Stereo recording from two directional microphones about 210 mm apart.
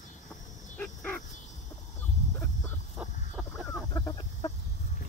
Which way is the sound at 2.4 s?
5° left (ahead or behind).